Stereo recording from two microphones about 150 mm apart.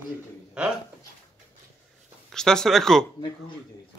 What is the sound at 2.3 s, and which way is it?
Speech, 5° left (ahead or behind).